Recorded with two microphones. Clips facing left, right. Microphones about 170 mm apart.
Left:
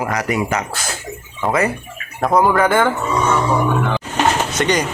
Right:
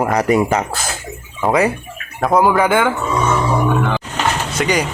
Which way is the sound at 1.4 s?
15° right (ahead or behind).